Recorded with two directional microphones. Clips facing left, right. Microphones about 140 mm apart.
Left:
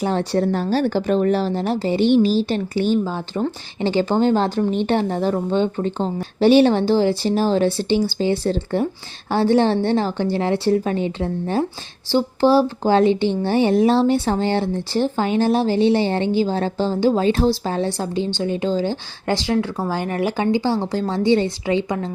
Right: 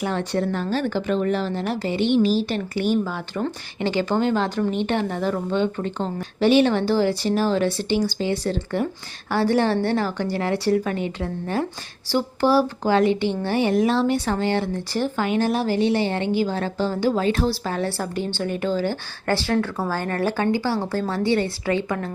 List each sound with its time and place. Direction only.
0.0 s a woman's voice: 35° left (ahead or behind)